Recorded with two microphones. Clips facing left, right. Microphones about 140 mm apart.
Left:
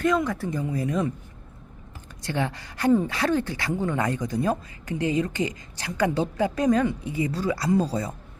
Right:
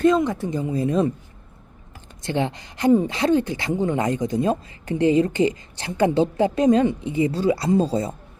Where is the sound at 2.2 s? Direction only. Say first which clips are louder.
Right 4 dB; 25° right (ahead or behind).